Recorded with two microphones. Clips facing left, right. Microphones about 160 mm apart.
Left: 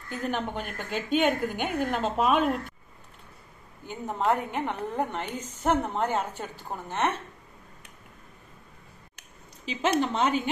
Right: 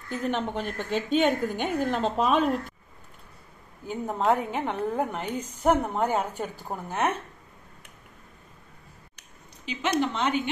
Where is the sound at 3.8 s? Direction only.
Centre (ahead or behind).